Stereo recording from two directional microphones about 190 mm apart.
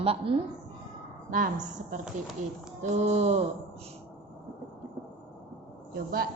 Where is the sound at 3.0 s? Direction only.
35° right (ahead or behind).